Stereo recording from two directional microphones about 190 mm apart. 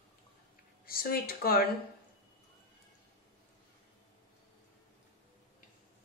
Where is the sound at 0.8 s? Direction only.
50° left (ahead or behind).